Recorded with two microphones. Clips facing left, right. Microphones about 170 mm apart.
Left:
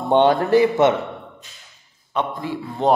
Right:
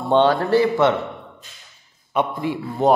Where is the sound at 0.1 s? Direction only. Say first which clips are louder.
Left 1 dB; 20° left (ahead or behind).